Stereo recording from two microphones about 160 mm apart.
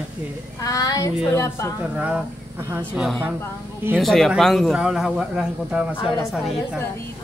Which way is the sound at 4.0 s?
Centre (ahead or behind).